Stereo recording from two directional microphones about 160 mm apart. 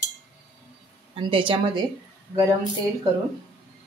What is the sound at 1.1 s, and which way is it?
Speech, 35° right (ahead or behind).